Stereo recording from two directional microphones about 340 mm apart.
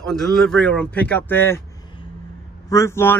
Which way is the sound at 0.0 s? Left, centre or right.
Centre.